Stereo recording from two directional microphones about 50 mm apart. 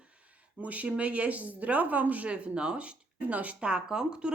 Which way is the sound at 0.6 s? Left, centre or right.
Right.